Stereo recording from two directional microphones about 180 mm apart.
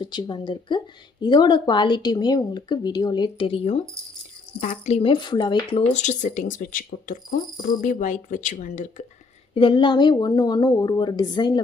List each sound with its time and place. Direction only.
0.0 s speech: 25° left (ahead or behind); by 9.0 s 40° left (ahead or behind)
9.6 s speech: 30° left (ahead or behind)